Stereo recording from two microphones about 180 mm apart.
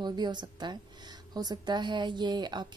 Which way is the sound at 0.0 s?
25° right (ahead or behind).